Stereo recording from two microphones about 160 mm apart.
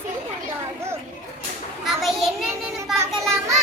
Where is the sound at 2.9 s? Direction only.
20° right (ahead or behind).